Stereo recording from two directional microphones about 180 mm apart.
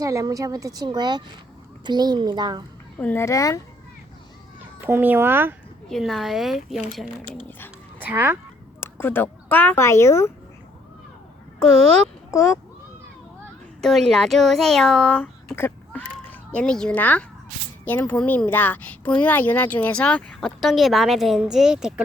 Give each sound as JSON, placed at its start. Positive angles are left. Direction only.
{"t": 0.0, "sound": "a woman's voice", "side_deg": -20}
{"t": 3.0, "sound": "speech", "side_deg": 10}
{"t": 4.9, "sound": "speech", "side_deg": -10}
{"t": 5.9, "sound": "a child's voice", "side_deg": 0}
{"t": 7.9, "sound": "speech", "side_deg": -10}
{"t": 8.8, "sound": "speech", "side_deg": 10}
{"t": 12.3, "sound": "speech", "side_deg": 15}
{"t": 13.8, "sound": "a child's voice", "side_deg": 0}